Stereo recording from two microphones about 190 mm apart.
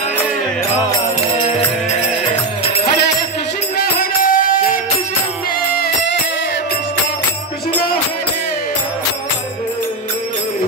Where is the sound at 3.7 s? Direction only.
45° left (ahead or behind).